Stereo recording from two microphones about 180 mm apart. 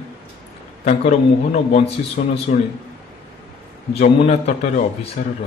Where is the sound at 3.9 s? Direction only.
40° left (ahead or behind).